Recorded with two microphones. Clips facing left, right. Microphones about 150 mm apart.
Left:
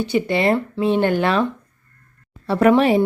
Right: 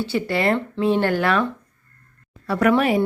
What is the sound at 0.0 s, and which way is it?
A woman's voice, 20° left (ahead or behind).